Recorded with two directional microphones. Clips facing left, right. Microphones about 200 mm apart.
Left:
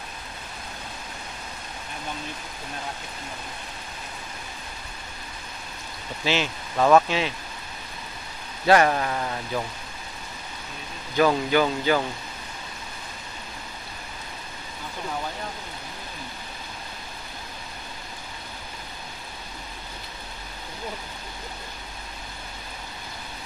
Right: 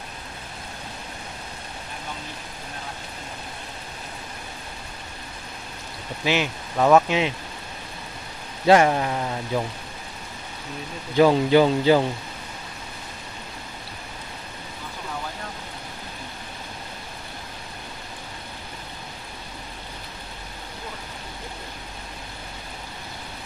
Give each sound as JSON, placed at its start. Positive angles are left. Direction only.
{"t": 6.2, "sound": "speech", "side_deg": -15}
{"t": 7.1, "sound": "speech", "side_deg": -20}
{"t": 8.6, "sound": "speech", "side_deg": -20}
{"t": 11.1, "sound": "speech", "side_deg": -25}